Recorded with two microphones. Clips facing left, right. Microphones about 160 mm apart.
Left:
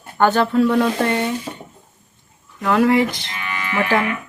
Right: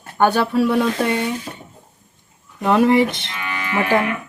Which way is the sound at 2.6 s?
25° right (ahead or behind).